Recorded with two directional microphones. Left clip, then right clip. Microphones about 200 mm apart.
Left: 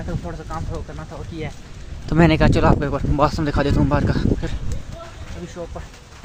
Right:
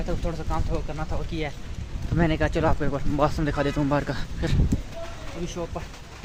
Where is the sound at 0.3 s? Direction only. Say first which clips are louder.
Even; centre (ahead or behind).